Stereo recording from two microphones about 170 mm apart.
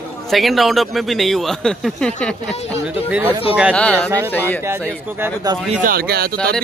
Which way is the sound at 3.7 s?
5° left (ahead or behind).